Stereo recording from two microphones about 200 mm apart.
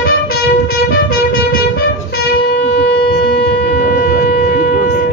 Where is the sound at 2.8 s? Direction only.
50° left (ahead or behind).